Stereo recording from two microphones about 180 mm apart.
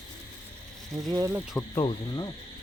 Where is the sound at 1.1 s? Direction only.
20° right (ahead or behind).